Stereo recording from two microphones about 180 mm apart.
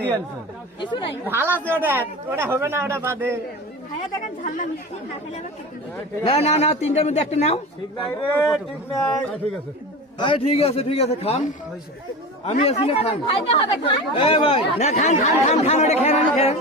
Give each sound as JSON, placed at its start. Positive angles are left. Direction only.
{"t": 0.8, "sound": "speech", "side_deg": 25}
{"t": 1.3, "sound": "a man's voice", "side_deg": -10}
{"t": 4.2, "sound": "speech", "side_deg": 45}
{"t": 6.2, "sound": "speech", "side_deg": 35}
{"t": 8.0, "sound": "speech", "side_deg": 10}
{"t": 10.2, "sound": "speech", "side_deg": 30}
{"t": 12.5, "sound": "speech", "side_deg": 35}